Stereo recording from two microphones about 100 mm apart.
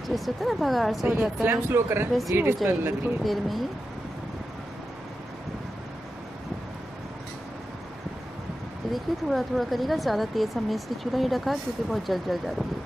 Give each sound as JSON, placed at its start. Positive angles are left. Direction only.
{"t": 0.1, "sound": "speech", "side_deg": 0}
{"t": 1.0, "sound": "speech", "side_deg": -15}
{"t": 3.3, "sound": "speech", "side_deg": 0}
{"t": 8.9, "sound": "speech", "side_deg": 0}